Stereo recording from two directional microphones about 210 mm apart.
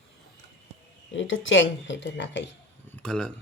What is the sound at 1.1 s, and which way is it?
Speech, 65° left (ahead or behind).